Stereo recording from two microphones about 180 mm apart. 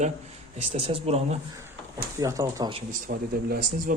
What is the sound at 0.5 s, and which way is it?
Speech, 40° right (ahead or behind).